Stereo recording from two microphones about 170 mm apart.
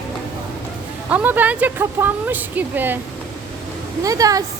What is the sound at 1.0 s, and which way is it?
A woman's voice, 10° right (ahead or behind).